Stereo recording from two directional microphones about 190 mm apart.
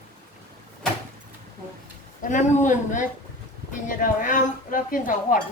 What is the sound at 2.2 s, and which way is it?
A man's voice, 40° left (ahead or behind).